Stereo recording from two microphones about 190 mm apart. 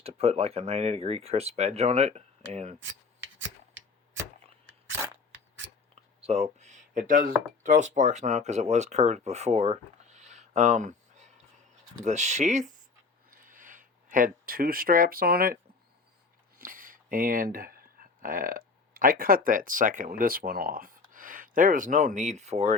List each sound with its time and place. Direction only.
0.0 s speech: 30° right (ahead or behind)
6.2 s speech: 35° right (ahead or behind)
13.3 s a sound: 45° right (ahead or behind)
16.6 s speech: 45° right (ahead or behind)